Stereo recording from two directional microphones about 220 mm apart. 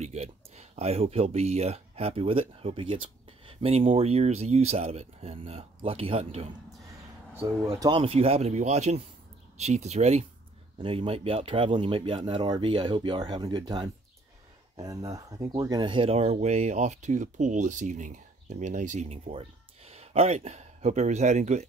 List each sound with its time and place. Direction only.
0.0 s speech: 30° right (ahead or behind)
7.7 s speech: 25° right (ahead or behind)